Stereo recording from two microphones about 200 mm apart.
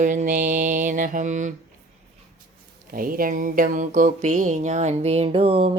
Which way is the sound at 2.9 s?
45° right (ahead or behind).